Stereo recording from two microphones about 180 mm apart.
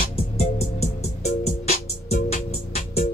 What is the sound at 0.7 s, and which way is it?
Music, 35° left (ahead or behind).